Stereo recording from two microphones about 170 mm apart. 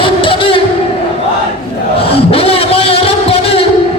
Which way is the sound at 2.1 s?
35° left (ahead or behind).